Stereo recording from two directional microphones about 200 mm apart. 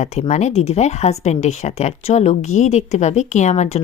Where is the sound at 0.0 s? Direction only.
35° left (ahead or behind).